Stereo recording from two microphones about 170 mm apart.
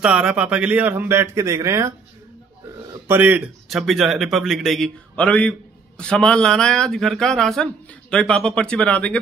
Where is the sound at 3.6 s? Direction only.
Centre (ahead or behind).